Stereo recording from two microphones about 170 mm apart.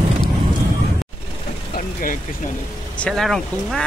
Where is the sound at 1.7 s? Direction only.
55° left (ahead or behind).